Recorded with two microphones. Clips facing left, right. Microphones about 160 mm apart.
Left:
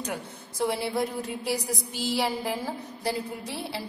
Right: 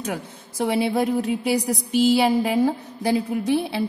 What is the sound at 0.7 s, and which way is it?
A woman's voice, 70° right (ahead or behind).